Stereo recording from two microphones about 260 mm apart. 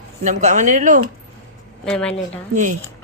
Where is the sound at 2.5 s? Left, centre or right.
Right.